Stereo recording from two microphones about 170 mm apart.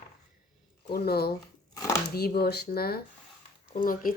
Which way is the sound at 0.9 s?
65° left (ahead or behind).